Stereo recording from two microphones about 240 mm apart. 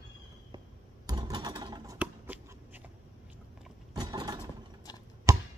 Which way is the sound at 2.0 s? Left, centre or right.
Centre.